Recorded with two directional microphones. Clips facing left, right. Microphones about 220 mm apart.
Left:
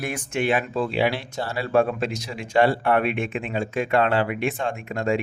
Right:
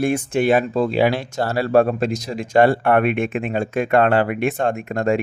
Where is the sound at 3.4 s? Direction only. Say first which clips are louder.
Right 4 dB; 50° right (ahead or behind).